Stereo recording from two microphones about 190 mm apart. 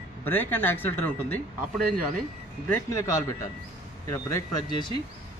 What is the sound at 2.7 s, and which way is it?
Speech, 15° left (ahead or behind).